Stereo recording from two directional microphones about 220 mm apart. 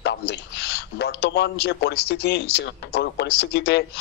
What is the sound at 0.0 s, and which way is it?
A man's voice, 50° left (ahead or behind).